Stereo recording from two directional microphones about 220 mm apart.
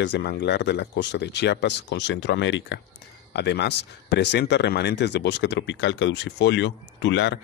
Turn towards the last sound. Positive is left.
turn(degrees=55)  # may be behind; listen again after turning